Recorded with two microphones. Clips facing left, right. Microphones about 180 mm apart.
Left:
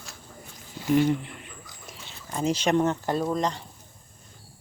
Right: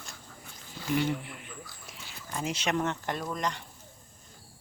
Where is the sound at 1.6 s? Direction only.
20° left (ahead or behind).